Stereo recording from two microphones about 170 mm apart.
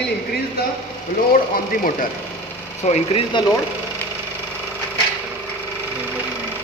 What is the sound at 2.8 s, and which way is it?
Speech, 35° left (ahead or behind).